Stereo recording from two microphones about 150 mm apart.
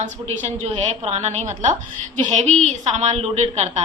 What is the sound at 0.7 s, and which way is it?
A woman's voice, 45° right (ahead or behind).